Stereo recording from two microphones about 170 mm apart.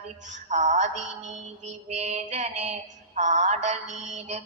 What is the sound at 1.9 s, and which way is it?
Mantra, 40° right (ahead or behind).